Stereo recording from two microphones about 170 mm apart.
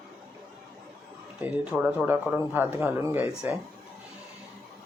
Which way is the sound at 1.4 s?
5° right (ahead or behind).